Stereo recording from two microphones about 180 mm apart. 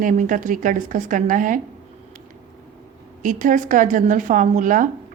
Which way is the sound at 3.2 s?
45° right (ahead or behind).